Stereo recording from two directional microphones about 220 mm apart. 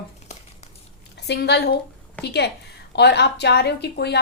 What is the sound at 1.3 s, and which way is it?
A woman's voice, 50° left (ahead or behind).